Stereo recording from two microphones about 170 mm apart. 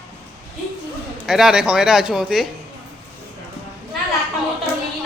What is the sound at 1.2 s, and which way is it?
Speech, 5° right (ahead or behind).